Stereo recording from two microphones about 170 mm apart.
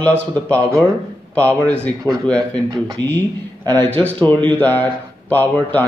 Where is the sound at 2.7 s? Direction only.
25° right (ahead or behind).